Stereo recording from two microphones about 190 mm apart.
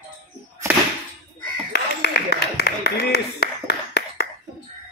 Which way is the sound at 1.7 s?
60° left (ahead or behind).